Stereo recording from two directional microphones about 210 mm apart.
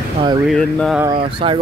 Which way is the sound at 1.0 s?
25° right (ahead or behind).